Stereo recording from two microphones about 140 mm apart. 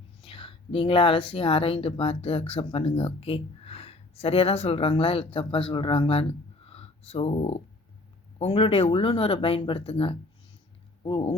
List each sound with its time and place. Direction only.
0.2 s speech: 40° left (ahead or behind)
6.7 s a sound: 45° left (ahead or behind)
8.4 s speech: 45° left (ahead or behind)